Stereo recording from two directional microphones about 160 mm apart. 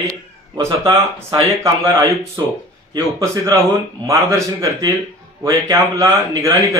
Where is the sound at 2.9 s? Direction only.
20° right (ahead or behind).